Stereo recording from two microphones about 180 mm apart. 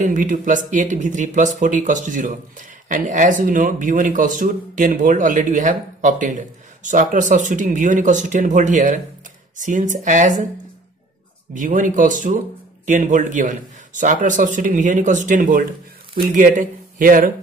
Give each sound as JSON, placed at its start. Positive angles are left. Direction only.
{"t": 0.0, "sound": "a man's voice", "side_deg": -45}
{"t": 11.5, "sound": "a man's voice", "side_deg": -45}